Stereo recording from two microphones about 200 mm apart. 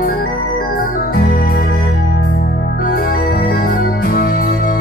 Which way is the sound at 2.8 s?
50° left (ahead or behind).